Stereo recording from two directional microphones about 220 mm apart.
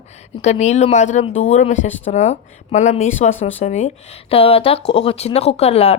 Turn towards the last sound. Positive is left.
turn(degrees=30)  # may be behind; listen again after turning